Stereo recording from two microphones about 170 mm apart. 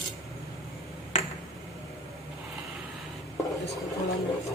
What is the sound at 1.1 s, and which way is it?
Finger snapping, 40° left (ahead or behind).